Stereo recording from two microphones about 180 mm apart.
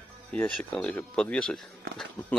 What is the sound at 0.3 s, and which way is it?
Speech, 5° left (ahead or behind).